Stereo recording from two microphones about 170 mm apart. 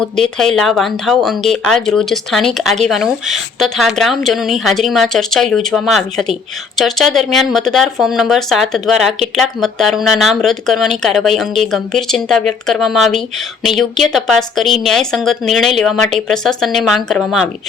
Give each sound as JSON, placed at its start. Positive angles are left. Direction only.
{"t": 0.0, "sound": "speech", "side_deg": 0}